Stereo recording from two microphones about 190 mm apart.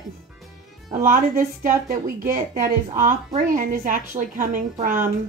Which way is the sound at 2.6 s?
40° right (ahead or behind).